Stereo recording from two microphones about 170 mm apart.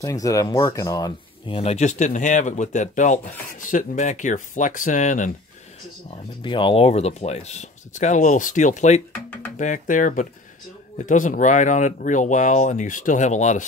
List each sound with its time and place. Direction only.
0.0 s speech: 20° left (ahead or behind)
1.5 s speech: 40° left (ahead or behind)
6.0 s speech: 30° left (ahead or behind)